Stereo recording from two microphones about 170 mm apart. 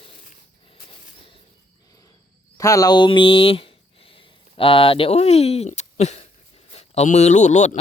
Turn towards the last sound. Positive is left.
turn(degrees=45)  # may be behind; listen again after turning